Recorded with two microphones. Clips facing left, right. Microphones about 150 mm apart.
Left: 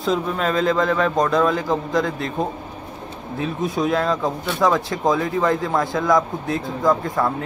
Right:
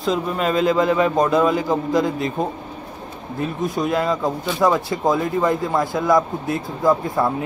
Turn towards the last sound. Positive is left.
turn(degrees=-10)  # may be behind; listen again after turning